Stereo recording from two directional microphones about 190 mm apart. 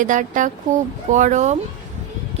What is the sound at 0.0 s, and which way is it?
A woman's voice, 40° right (ahead or behind).